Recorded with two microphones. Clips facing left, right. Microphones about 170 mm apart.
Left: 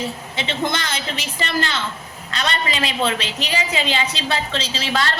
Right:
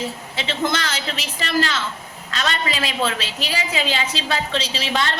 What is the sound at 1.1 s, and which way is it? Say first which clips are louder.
Speech: left 2 dB; centre (ahead or behind).